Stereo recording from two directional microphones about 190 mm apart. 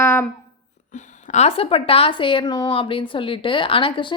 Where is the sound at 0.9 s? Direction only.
35° left (ahead or behind).